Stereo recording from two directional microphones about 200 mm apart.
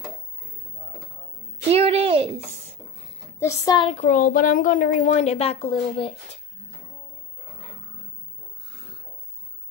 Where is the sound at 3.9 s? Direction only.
40° left (ahead or behind).